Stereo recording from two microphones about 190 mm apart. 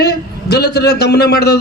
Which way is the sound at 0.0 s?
60° left (ahead or behind).